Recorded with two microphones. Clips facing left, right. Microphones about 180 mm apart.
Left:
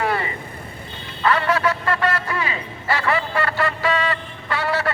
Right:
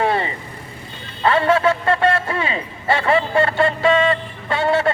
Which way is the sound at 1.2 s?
25° right (ahead or behind).